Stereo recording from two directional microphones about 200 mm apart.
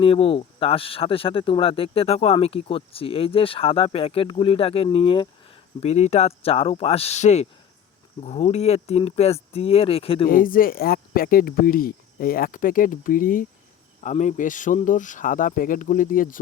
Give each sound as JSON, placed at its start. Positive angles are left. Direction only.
{"t": 0.0, "sound": "speech", "side_deg": 25}
{"t": 10.2, "sound": "speech", "side_deg": 45}